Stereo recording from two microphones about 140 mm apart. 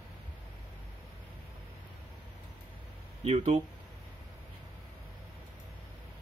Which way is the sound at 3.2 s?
50° right (ahead or behind).